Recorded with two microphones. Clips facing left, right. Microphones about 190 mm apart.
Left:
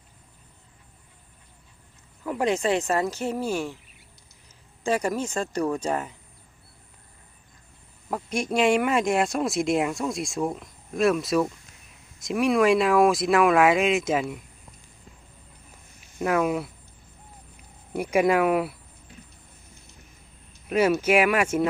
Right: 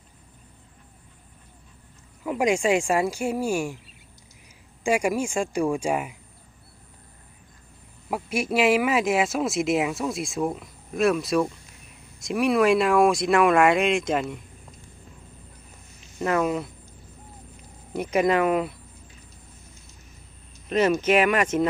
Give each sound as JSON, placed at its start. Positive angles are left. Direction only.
{"t": 2.2, "sound": "speech", "side_deg": -10}
{"t": 4.8, "sound": "speech", "side_deg": -10}
{"t": 8.1, "sound": "speech", "side_deg": -5}
{"t": 16.0, "sound": "speech", "side_deg": 10}
{"t": 17.9, "sound": "speech", "side_deg": 10}
{"t": 20.7, "sound": "speech", "side_deg": 10}